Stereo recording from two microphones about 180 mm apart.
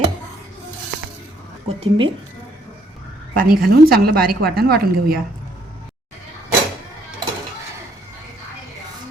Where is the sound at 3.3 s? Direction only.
55° right (ahead or behind).